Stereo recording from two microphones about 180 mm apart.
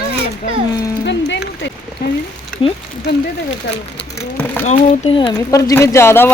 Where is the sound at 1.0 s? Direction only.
85° left.